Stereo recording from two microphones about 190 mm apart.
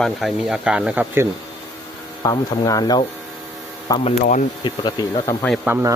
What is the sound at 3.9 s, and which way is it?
Speech, 30° left (ahead or behind).